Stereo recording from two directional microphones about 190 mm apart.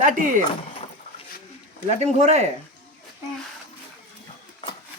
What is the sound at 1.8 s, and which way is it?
Speech, 35° right (ahead or behind).